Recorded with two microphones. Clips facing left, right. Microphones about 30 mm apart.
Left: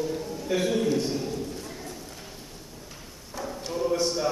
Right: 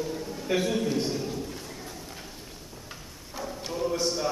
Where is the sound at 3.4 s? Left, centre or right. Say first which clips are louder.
Left 2 dB; centre.